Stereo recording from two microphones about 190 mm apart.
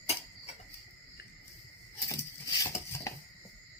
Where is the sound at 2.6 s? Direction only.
15° left (ahead or behind).